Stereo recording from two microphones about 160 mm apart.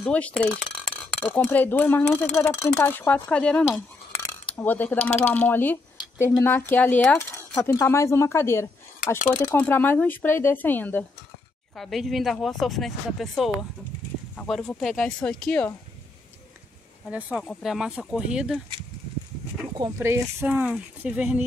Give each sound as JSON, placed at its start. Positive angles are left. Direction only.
{"t": 0.0, "sound": "speech", "side_deg": 5}
{"t": 11.7, "sound": "speech", "side_deg": 0}
{"t": 17.4, "sound": "speech", "side_deg": 0}
{"t": 19.8, "sound": "speech", "side_deg": -15}